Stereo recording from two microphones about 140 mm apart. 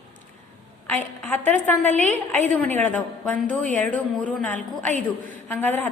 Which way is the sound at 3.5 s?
65° right (ahead or behind).